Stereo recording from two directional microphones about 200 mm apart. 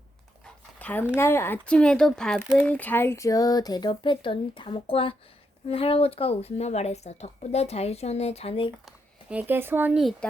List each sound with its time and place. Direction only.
0.4 s speech: 10° left (ahead or behind); by 8.7 s 30° left (ahead or behind)
9.3 s speech: 10° right (ahead or behind)